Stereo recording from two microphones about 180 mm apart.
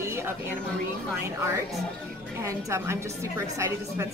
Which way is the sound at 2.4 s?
15° right (ahead or behind).